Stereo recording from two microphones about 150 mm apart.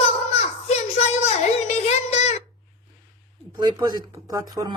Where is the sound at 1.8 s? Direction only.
50° left (ahead or behind).